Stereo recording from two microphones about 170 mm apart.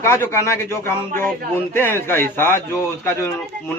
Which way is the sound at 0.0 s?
15° left (ahead or behind).